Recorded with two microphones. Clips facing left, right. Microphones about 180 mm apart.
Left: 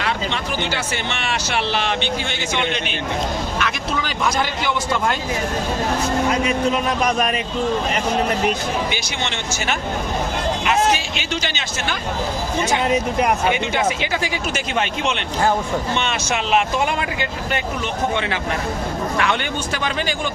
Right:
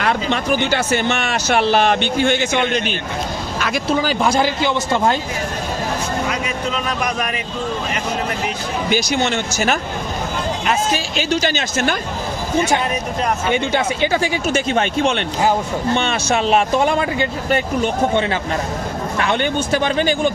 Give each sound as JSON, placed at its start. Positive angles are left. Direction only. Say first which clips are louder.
{"t": 0.0, "sound": "speech", "louder": "right 5 dB", "side_deg": -50}
{"t": 8.9, "sound": "speech", "louder": "right 8 dB", "side_deg": -40}
{"t": 10.9, "sound": "speech", "louder": "right 5 dB", "side_deg": -40}
{"t": 12.9, "sound": "speech", "louder": "left 3 dB", "side_deg": 15}
{"t": 14.0, "sound": "speech", "louder": "right 6 dB", "side_deg": -30}
{"t": 14.7, "sound": "speech", "louder": "right 3 dB", "side_deg": -45}
{"t": 19.7, "sound": "speech", "louder": "right 7 dB", "side_deg": -35}